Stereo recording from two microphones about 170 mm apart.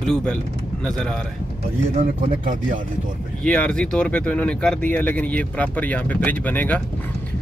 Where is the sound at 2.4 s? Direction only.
50° right (ahead or behind).